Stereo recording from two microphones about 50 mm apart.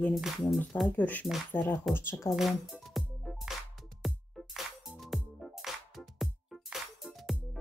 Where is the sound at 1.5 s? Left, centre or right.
Left.